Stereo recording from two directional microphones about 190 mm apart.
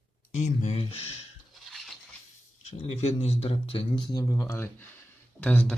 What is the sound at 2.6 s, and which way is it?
Speech, 35° left (ahead or behind).